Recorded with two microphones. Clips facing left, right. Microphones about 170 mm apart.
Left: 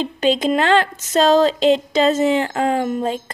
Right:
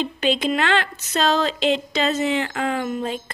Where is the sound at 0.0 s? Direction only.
40° left (ahead or behind).